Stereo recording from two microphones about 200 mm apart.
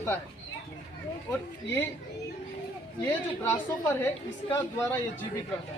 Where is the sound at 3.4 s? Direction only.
15° left (ahead or behind).